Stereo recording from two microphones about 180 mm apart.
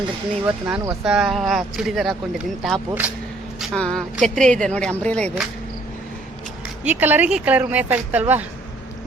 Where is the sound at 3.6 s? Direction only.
5° left (ahead or behind).